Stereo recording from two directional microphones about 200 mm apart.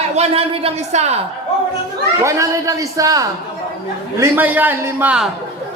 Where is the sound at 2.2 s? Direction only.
15° right (ahead or behind).